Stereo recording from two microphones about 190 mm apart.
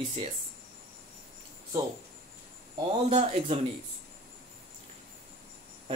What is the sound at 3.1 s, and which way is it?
Speech, 35° right (ahead or behind).